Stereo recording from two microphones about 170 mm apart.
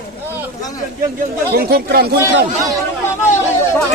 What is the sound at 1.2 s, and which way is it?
A man's voice, 60° right (ahead or behind).